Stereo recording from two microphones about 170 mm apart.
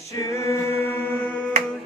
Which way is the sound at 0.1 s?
20° left (ahead or behind).